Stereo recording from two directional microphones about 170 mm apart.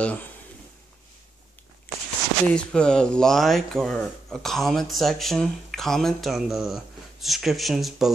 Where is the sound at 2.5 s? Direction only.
5° left (ahead or behind).